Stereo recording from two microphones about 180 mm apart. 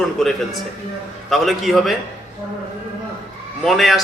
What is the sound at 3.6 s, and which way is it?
Speech, centre (ahead or behind).